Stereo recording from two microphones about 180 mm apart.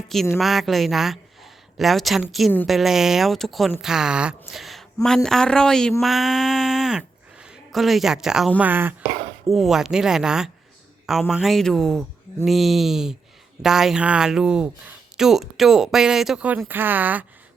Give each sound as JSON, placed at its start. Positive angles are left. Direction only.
{"t": 0.1, "sound": "speech", "side_deg": 0}